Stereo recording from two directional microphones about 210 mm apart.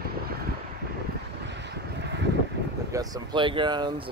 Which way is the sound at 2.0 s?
55° right (ahead or behind).